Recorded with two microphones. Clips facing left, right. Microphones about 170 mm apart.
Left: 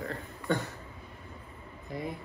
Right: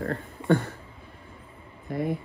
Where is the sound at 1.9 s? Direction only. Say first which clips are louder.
Right 8 dB; 55° right (ahead or behind).